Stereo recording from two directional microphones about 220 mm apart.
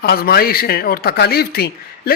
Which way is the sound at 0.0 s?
45° left (ahead or behind).